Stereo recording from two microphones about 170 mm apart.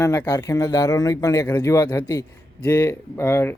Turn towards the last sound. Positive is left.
turn(degrees=15)  # may be behind; listen again after turning